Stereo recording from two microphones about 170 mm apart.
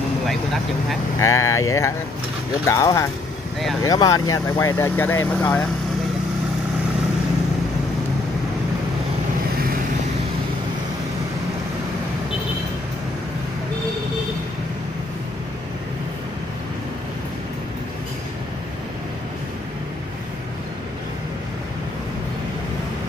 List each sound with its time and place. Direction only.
1.2 s speech: 20° left (ahead or behind)